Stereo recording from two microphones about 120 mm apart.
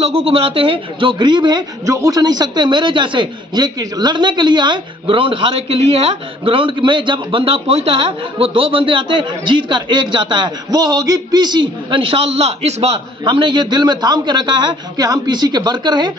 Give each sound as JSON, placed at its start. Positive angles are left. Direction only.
{"t": 0.0, "sound": "a man's voice", "side_deg": -55}
{"t": 1.9, "sound": "a man's voice", "side_deg": -30}
{"t": 13.2, "sound": "a man's voice", "side_deg": -40}